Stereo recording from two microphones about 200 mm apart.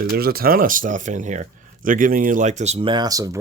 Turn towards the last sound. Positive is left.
turn(degrees=-20)  # may be behind; listen again after turning